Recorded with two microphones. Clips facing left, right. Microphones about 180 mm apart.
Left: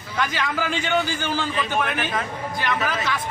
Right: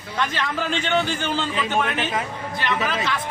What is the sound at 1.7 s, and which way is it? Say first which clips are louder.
Speech: right 2 dB; 25° right (ahead or behind).